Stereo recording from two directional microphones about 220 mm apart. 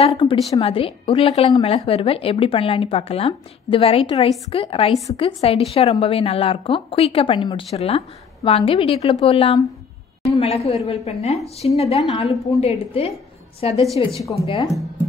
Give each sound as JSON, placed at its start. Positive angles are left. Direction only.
{"t": 0.1, "sound": "a woman's voice", "side_deg": 25}